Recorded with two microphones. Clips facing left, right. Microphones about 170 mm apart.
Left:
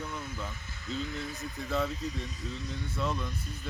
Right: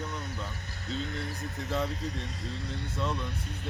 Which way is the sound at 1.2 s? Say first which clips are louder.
Right 1 dB; 65° right (ahead or behind).